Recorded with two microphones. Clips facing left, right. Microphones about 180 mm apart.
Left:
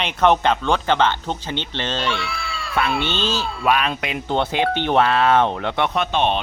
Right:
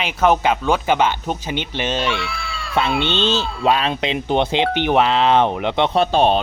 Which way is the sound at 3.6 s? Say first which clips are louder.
Right 2 dB; 25° right (ahead or behind).